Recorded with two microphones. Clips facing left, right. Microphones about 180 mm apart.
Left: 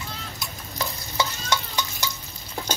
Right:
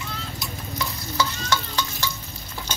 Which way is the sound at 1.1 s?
20° left (ahead or behind).